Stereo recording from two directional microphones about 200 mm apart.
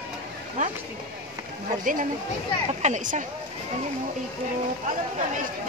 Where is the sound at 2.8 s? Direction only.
40° right (ahead or behind).